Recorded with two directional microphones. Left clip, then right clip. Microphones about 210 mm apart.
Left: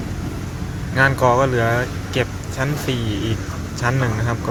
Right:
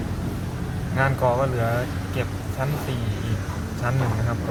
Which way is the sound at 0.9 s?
25° left (ahead or behind).